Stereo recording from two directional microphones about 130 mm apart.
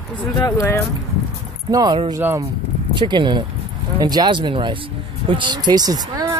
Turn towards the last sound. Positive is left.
turn(degrees=-30)  # may be behind; listen again after turning